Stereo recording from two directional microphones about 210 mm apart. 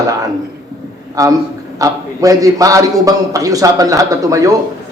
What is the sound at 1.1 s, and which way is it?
A man's voice, 15° right (ahead or behind).